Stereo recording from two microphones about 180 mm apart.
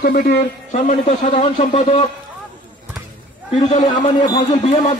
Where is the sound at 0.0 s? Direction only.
55° left (ahead or behind).